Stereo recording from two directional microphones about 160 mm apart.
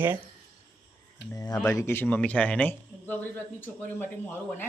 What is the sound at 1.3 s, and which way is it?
A man's voice, 25° left (ahead or behind).